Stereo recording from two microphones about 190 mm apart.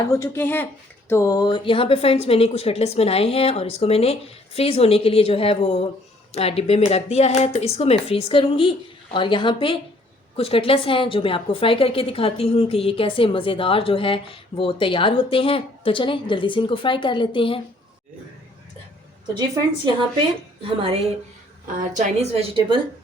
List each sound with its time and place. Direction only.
0.0 s a woman's voice: 15° left (ahead or behind)
19.4 s a woman's voice: 25° right (ahead or behind)
21.9 s a woman's voice: 35° right (ahead or behind)